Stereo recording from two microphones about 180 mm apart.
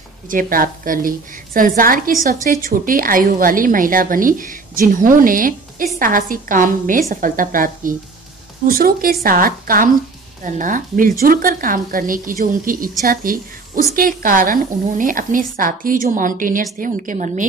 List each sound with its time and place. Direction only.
0.3 s a woman's voice: 50° right (ahead or behind)